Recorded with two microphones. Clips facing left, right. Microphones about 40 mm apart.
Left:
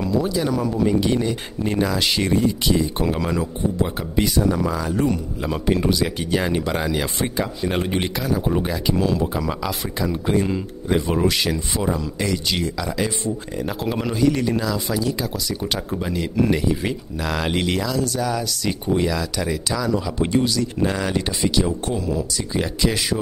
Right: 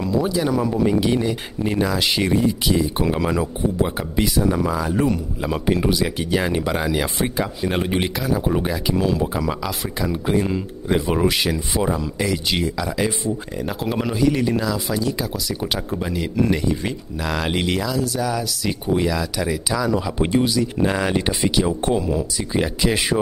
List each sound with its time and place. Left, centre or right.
0.0 s speech: centre; by 23.1 s right